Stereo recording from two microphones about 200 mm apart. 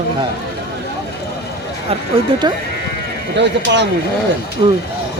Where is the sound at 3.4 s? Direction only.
60° right (ahead or behind).